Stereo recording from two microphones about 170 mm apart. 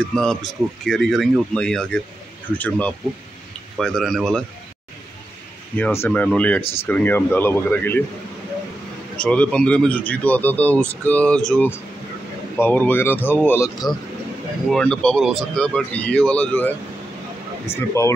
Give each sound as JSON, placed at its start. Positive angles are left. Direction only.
{"t": 0.1, "sound": "speech", "side_deg": 5}
{"t": 5.8, "sound": "speech", "side_deg": 10}
{"t": 9.1, "sound": "speech", "side_deg": 5}
{"t": 14.7, "sound": "speech", "side_deg": 5}